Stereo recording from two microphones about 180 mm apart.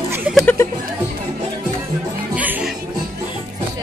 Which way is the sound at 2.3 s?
10° right (ahead or behind).